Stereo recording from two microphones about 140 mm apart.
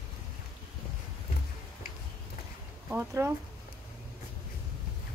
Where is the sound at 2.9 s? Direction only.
20° right (ahead or behind).